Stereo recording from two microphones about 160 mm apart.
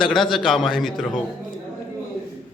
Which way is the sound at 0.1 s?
Centre (ahead or behind).